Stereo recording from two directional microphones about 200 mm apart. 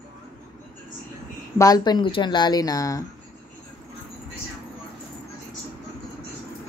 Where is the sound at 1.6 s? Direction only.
20° left (ahead or behind).